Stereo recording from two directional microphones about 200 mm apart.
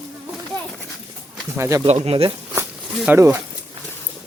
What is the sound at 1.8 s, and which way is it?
Speech, 30° right (ahead or behind).